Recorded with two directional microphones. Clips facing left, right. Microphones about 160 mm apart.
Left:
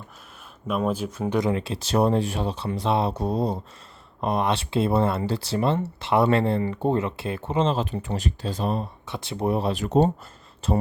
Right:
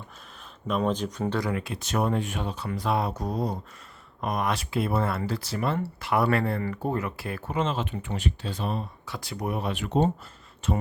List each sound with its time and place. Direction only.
0.7 s speech: 5° left (ahead or behind)
1.3 s speech: 20° left (ahead or behind); by 8.9 s 40° left (ahead or behind)
9.0 s speech: 25° left (ahead or behind)